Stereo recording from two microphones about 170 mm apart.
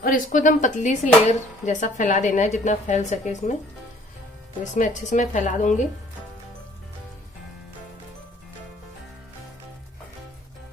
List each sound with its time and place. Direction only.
0.0 s speech: 50° left (ahead or behind)
4.7 s speech: 45° left (ahead or behind)